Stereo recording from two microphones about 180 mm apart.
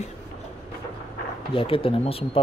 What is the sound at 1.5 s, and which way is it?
Speech, 30° left (ahead or behind).